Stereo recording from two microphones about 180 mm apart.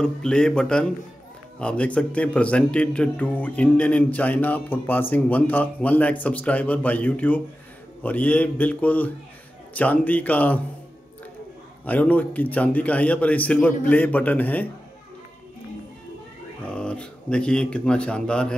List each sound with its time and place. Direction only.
0.0 s speech: 5° left (ahead or behind)
11.8 s speech: 10° left (ahead or behind)
16.6 s speech: 5° left (ahead or behind)